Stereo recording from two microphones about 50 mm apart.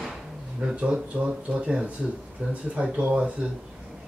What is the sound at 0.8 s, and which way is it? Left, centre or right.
Speech, right.